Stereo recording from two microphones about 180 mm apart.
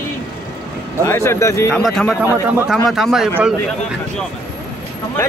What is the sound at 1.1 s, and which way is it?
Speech, 15° left (ahead or behind).